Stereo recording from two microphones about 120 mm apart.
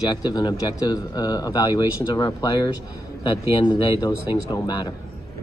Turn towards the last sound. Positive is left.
turn(degrees=40)  # may be behind; listen again after turning